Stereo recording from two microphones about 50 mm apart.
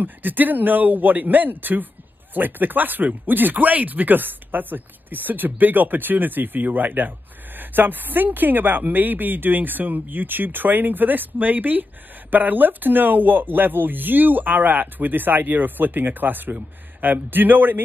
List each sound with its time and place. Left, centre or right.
0.0 s speech: right